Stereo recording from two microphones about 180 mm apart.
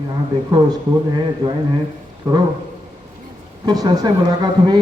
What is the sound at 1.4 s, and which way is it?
Speech, 25° right (ahead or behind).